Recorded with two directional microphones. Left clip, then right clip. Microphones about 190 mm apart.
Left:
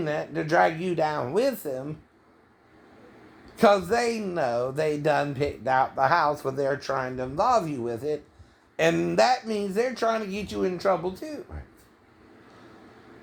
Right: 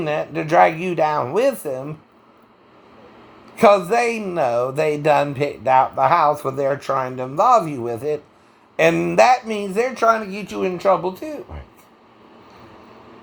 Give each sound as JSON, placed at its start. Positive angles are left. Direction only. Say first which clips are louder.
{"t": 0.0, "sound": "speech", "louder": "right 6 dB", "side_deg": -15}
{"t": 3.5, "sound": "speech", "louder": "right 7 dB", "side_deg": -20}